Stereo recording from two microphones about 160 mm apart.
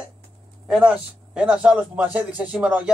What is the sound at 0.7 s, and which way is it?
A man's voice, 5° right (ahead or behind).